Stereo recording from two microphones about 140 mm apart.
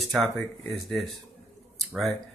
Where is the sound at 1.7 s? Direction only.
Centre (ahead or behind).